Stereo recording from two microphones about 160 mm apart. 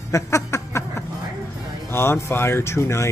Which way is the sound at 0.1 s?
20° left (ahead or behind).